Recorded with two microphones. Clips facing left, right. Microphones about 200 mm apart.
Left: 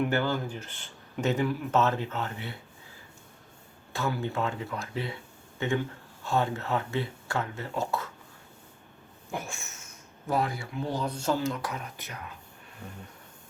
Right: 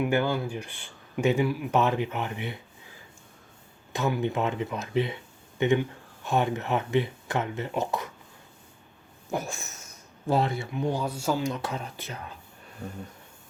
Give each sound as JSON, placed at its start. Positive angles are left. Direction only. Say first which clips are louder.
{"t": 0.0, "sound": "speech", "louder": "right 2 dB", "side_deg": -10}
{"t": 3.9, "sound": "speech", "louder": "right 4 dB", "side_deg": -20}
{"t": 9.3, "sound": "speech", "louder": "right 5 dB", "side_deg": -40}
{"t": 12.8, "sound": "speech", "louder": "right 6 dB", "side_deg": -40}